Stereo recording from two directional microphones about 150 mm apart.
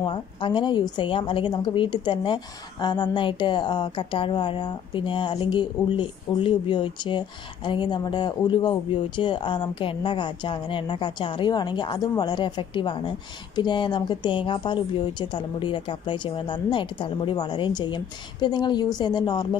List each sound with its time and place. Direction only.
0.0 s a woman's voice: 30° left (ahead or behind)